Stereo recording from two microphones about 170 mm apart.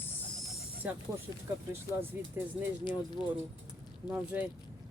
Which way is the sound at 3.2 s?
5° right (ahead or behind).